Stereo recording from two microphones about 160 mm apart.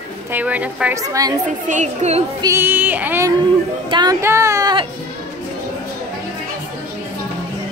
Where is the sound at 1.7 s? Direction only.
45° right (ahead or behind).